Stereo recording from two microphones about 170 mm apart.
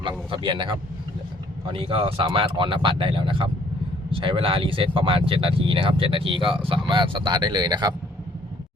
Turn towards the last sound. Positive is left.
turn(degrees=-25)  # may be behind; listen again after turning